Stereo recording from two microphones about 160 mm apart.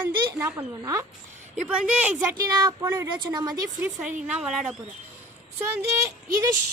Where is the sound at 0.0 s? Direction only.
15° right (ahead or behind).